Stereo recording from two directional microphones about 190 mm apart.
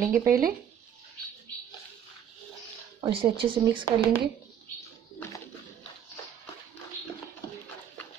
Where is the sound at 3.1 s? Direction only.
25° right (ahead or behind).